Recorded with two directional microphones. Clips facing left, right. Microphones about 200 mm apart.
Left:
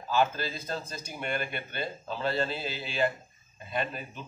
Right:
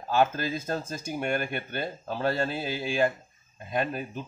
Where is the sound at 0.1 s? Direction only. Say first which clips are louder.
Right 3 dB; 50° right (ahead or behind).